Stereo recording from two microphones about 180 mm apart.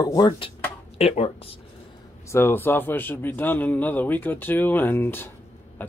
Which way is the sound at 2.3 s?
15° left (ahead or behind).